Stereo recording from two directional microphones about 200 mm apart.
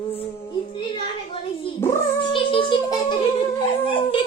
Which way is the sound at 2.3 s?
25° left (ahead or behind).